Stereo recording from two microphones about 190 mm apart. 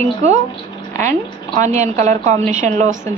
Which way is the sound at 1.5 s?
40° right (ahead or behind).